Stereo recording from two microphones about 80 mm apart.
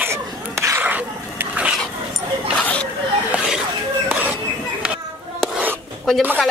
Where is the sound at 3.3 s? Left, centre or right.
Centre.